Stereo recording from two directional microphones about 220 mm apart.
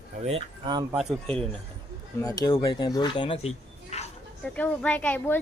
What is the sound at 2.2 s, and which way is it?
Speech, 15° left (ahead or behind).